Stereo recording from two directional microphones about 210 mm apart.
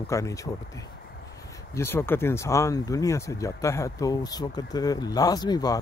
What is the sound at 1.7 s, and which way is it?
Speech, 10° left (ahead or behind).